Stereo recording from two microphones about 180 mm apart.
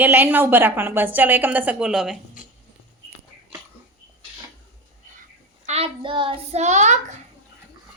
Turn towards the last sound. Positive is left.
turn(degrees=-40)  # may be behind; listen again after turning